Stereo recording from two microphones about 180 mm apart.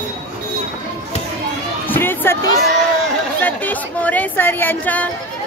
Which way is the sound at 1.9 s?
10° left (ahead or behind).